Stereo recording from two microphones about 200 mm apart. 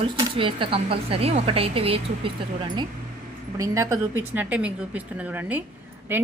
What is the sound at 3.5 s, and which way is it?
A woman's voice, 15° right (ahead or behind).